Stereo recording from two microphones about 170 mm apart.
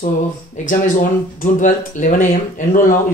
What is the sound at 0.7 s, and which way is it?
Speech, 50° left (ahead or behind).